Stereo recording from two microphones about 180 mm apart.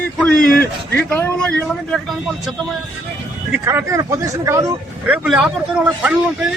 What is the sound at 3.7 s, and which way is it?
Speech, 15° right (ahead or behind).